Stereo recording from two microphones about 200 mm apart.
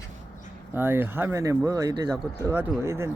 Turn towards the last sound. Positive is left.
turn(degrees=-15)  # may be behind; listen again after turning